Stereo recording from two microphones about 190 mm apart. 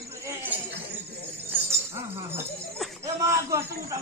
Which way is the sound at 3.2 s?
15° right (ahead or behind).